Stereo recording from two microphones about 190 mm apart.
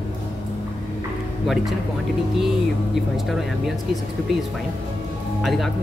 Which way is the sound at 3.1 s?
Centre (ahead or behind).